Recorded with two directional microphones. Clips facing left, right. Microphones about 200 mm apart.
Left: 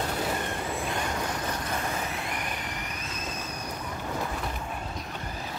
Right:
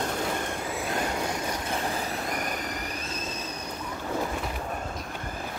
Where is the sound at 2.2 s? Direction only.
45° right (ahead or behind).